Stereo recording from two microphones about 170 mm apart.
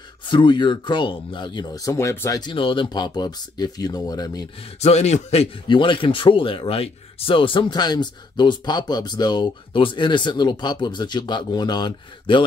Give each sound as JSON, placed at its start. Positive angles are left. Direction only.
{"t": 0.2, "sound": "speech", "side_deg": 30}
{"t": 4.7, "sound": "speech", "side_deg": 40}